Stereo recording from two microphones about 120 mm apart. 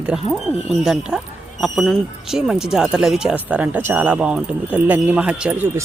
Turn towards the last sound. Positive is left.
turn(degrees=-10)  # may be behind; listen again after turning